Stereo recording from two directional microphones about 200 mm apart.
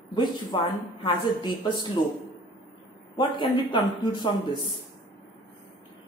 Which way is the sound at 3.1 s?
25° left (ahead or behind).